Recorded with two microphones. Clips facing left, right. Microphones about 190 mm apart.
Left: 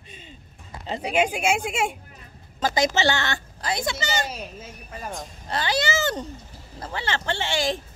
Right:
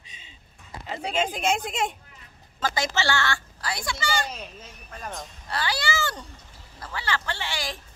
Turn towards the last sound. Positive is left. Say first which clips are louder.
# left 7 dB
turn(degrees=25)  # may be behind; listen again after turning